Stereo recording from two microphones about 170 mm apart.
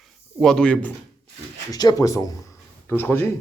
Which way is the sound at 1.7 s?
25° left (ahead or behind).